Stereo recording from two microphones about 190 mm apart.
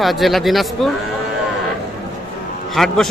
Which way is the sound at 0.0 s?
Centre (ahead or behind).